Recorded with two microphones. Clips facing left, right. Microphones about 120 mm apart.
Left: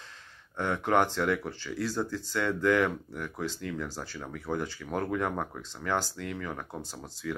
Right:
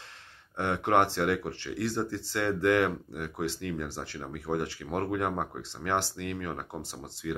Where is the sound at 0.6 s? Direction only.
25° right (ahead or behind).